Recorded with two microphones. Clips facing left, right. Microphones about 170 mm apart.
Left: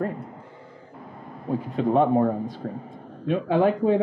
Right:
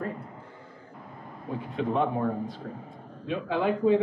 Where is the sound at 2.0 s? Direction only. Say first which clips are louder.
Left 8 dB; 45° left (ahead or behind).